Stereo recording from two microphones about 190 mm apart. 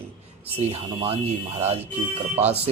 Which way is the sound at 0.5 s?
30° right (ahead or behind).